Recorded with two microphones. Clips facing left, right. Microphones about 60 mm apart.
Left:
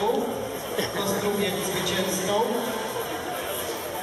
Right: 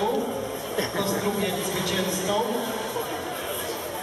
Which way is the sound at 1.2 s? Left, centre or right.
Centre.